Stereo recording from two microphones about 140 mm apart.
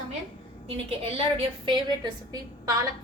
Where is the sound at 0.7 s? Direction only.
45° right (ahead or behind).